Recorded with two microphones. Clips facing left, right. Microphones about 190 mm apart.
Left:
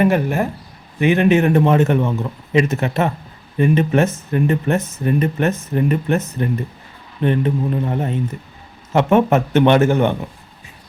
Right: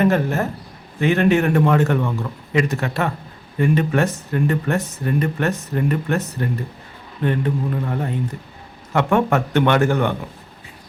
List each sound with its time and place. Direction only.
0.0 s a man's voice: 15° left (ahead or behind)